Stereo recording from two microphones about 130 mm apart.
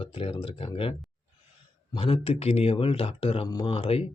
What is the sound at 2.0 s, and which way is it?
Speech, 45° left (ahead or behind).